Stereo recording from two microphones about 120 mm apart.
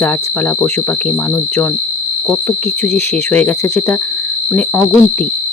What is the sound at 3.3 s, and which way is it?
Speech, 15° left (ahead or behind).